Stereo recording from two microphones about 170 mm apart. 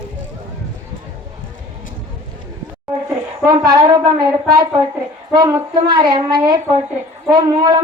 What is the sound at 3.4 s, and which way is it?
Speech, 20° right (ahead or behind).